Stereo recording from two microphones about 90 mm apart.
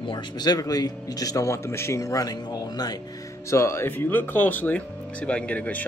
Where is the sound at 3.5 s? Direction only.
30° left (ahead or behind).